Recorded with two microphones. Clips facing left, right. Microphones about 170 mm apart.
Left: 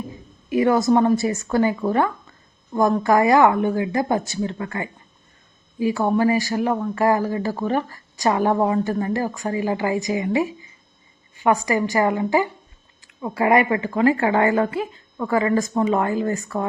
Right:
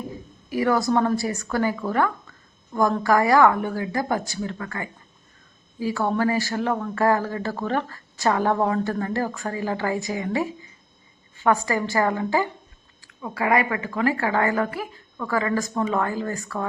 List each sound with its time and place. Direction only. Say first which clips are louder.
0.5 s a woman's voice: left 4 dB; 20° left (ahead or behind)
13.1 s a woman's voice: left 4 dB; 25° left (ahead or behind)